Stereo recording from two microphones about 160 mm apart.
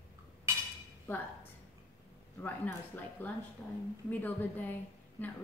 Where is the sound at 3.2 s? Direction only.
10° left (ahead or behind).